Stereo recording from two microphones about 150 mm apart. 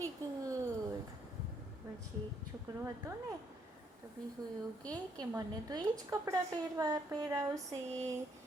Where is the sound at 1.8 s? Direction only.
15° right (ahead or behind).